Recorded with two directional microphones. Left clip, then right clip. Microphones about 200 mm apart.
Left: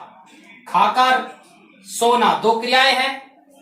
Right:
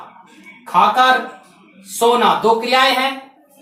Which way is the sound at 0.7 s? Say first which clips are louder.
Right 3 dB; centre (ahead or behind).